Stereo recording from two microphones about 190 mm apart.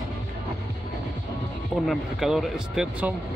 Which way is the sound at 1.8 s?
Centre (ahead or behind).